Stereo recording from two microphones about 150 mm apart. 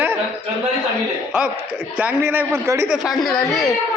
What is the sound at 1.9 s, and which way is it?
Speech, 10° right (ahead or behind).